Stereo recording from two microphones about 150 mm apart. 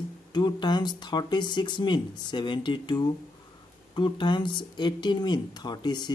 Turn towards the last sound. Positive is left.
turn(degrees=30)  # may be behind; listen again after turning